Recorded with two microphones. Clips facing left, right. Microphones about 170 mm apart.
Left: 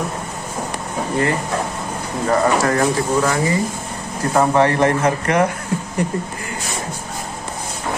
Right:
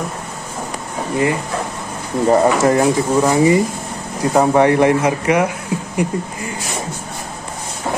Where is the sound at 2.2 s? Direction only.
25° right (ahead or behind).